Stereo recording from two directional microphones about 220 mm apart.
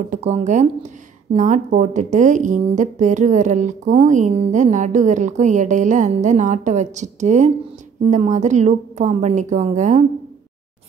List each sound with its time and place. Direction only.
0.1 s a woman's voice: 30° right (ahead or behind)